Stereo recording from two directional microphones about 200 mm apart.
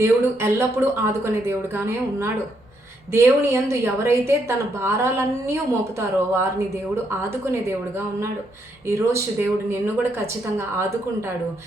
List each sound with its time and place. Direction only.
0.0 s a woman's voice: 10° right (ahead or behind)
8.9 s a woman's voice: 15° right (ahead or behind)